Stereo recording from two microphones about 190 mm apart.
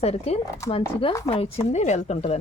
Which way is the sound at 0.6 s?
15° left (ahead or behind).